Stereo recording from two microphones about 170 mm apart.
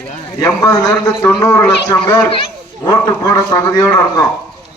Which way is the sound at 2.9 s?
20° left (ahead or behind).